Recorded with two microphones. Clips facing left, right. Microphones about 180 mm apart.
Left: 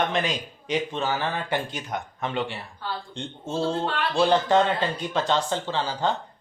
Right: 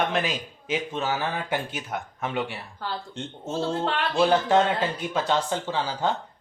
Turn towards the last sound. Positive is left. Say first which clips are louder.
# even
turn(degrees=-10)  # may be behind; listen again after turning